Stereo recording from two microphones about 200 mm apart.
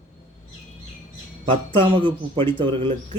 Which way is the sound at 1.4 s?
25° right (ahead or behind).